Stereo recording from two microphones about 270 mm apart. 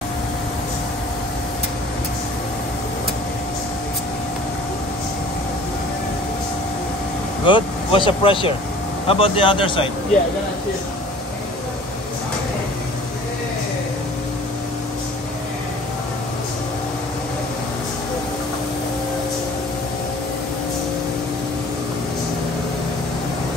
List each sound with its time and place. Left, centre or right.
7.4 s speech: centre